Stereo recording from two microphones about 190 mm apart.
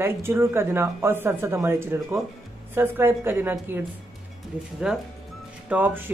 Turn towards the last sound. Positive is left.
turn(degrees=-10)  # may be behind; listen again after turning